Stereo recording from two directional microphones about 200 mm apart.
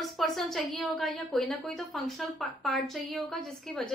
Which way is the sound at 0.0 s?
Centre (ahead or behind).